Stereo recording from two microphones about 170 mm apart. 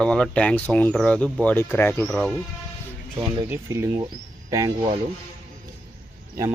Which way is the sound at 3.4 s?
15° right (ahead or behind).